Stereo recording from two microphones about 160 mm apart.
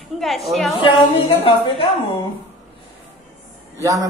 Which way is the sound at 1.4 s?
35° left (ahead or behind).